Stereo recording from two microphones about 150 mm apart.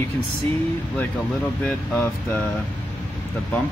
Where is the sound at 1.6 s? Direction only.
10° left (ahead or behind).